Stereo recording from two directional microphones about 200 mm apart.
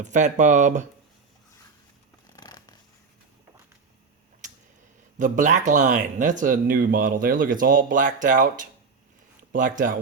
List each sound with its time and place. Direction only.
0.0 s speech: 40° right (ahead or behind)
2.2 s scissors: 20° left (ahead or behind)
5.2 s speech: 40° right (ahead or behind)